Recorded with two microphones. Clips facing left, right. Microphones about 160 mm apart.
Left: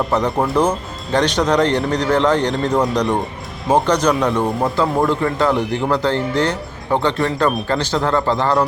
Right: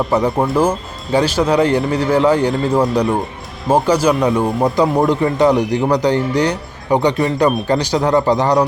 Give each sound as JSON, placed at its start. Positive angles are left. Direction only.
{"t": 0.1, "sound": "speech", "side_deg": -10}